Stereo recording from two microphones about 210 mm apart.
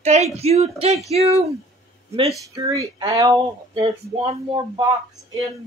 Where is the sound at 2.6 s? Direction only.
15° right (ahead or behind).